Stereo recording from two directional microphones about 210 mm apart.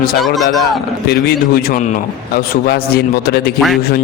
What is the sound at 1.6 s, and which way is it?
A man's voice, 40° left (ahead or behind).